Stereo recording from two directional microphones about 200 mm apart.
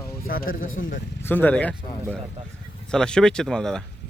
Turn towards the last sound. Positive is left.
turn(degrees=5)  # may be behind; listen again after turning